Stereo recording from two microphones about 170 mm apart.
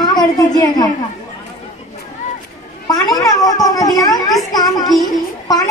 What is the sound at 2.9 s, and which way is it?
A child's voice, 20° left (ahead or behind).